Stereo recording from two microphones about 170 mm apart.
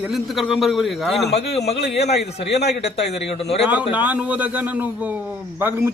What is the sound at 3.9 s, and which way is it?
A man's voice, 10° right (ahead or behind).